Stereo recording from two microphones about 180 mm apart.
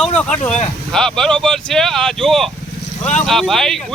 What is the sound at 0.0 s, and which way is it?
Speech, 5° left (ahead or behind).